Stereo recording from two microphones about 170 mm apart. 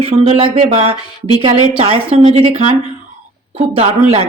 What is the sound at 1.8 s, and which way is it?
Speech, 35° right (ahead or behind).